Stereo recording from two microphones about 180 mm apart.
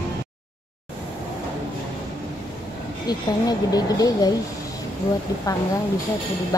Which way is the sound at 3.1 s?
20° left (ahead or behind).